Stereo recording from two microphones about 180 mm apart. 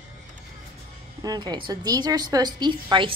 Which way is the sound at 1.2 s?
20° right (ahead or behind).